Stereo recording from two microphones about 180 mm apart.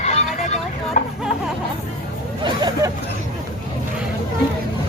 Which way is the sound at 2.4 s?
20° right (ahead or behind).